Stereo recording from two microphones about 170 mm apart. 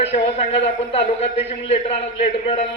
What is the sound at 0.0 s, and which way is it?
A man's voice, 35° left (ahead or behind).